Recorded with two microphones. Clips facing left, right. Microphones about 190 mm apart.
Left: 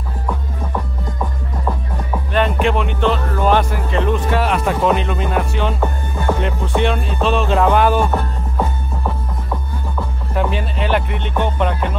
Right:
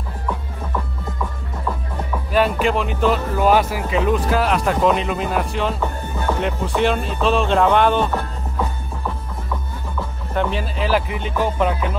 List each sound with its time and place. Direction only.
2.3 s speech: 5° right (ahead or behind)
10.3 s speech: centre (ahead or behind)